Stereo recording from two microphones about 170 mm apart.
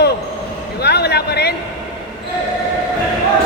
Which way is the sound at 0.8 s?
75° left (ahead or behind).